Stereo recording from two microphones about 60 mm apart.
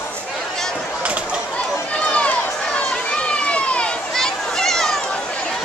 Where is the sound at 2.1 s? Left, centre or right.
Left.